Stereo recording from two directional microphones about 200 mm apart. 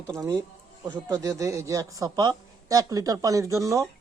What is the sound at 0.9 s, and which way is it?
A man's voice, 15° right (ahead or behind).